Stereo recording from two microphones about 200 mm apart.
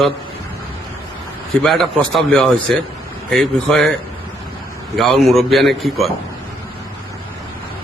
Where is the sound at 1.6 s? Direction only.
5° left (ahead or behind).